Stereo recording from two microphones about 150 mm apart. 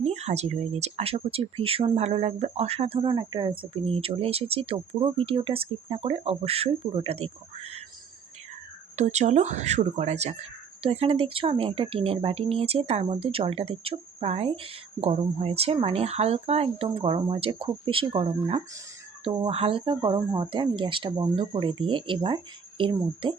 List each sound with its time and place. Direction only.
0.0 s speech: 45° right (ahead or behind)
9.0 s speech: 50° right (ahead or behind); by 23.3 s 35° right (ahead or behind)